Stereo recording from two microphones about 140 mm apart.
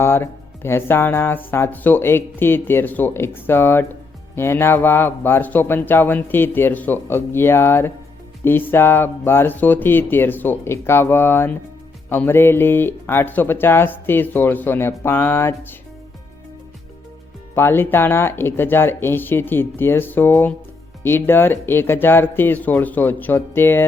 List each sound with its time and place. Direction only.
0.0 s speech: 15° left (ahead or behind)
17.5 s speech: 15° left (ahead or behind)